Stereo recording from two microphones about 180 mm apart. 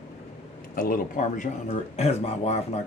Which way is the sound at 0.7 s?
50° left (ahead or behind).